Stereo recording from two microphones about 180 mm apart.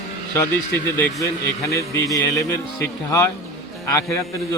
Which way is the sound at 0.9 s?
15° left (ahead or behind).